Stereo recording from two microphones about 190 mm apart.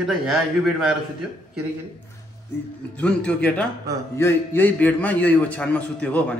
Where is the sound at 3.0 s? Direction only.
5° left (ahead or behind).